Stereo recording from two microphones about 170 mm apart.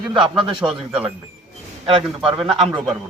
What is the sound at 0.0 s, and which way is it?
Speech, 5° right (ahead or behind).